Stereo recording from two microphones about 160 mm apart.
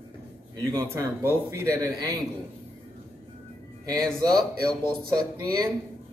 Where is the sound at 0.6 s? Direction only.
15° right (ahead or behind).